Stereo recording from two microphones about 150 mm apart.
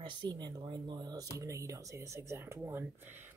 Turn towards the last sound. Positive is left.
turn(degrees=-15)  # may be behind; listen again after turning